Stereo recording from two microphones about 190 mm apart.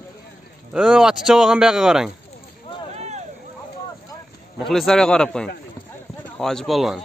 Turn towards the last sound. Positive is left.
turn(degrees=0)  # may be behind; listen again after turning